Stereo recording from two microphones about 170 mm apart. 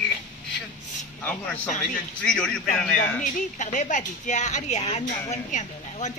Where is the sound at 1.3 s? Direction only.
10° left (ahead or behind).